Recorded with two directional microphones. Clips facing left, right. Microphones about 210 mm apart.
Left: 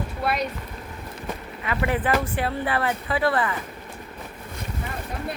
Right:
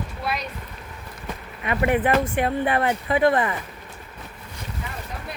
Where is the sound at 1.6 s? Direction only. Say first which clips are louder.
Right 4 dB; 25° right (ahead or behind).